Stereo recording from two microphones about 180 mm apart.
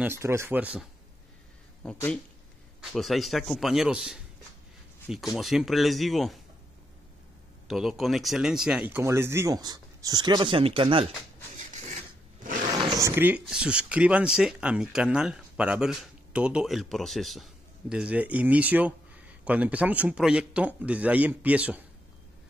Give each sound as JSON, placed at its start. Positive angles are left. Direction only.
{"t": 0.0, "sound": "speech", "side_deg": -15}
{"t": 1.8, "sound": "a man's voice", "side_deg": 5}
{"t": 7.6, "sound": "speech", "side_deg": 0}
{"t": 11.5, "sound": "a sound", "side_deg": -40}
{"t": 12.8, "sound": "speech", "side_deg": -20}